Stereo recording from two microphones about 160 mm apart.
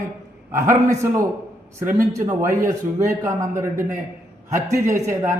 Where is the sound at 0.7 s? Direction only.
15° right (ahead or behind).